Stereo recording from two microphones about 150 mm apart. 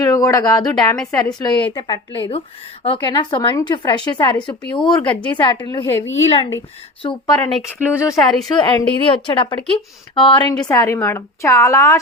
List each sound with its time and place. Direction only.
0.0 s a woman's voice: 25° left (ahead or behind)
8.5 s a woman's voice: 35° left (ahead or behind)